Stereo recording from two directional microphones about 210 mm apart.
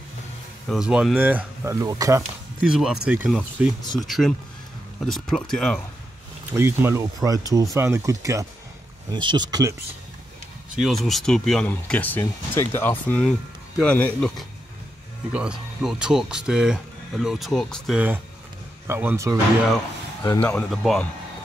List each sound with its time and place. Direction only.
0.7 s speech: 5° right (ahead or behind)
2.6 s speech: 5° right (ahead or behind)
6.5 s speech: 10° right (ahead or behind)
10.8 s speech: centre (ahead or behind)
20.2 s speech: 10° left (ahead or behind)